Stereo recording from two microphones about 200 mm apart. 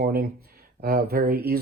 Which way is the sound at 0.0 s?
50° right (ahead or behind).